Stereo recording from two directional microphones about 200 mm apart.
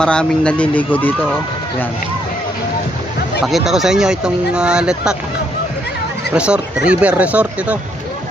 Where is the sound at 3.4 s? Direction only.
Centre (ahead or behind).